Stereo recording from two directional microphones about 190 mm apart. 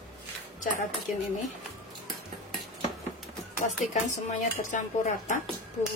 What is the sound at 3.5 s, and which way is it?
A woman's voice, 40° left (ahead or behind).